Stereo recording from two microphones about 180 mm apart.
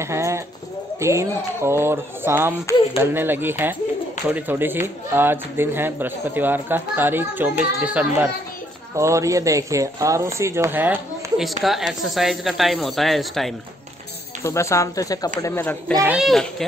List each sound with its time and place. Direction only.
0.0 s a sound: 15° right (ahead or behind)
1.0 s a man's voice: 15° right (ahead or behind); by 13.5 s centre (ahead or behind)
14.4 s speech: 15° left (ahead or behind)